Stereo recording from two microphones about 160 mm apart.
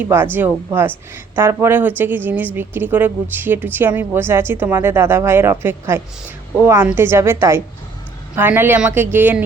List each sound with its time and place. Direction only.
0.0 s a woman's voice: 15° right (ahead or behind)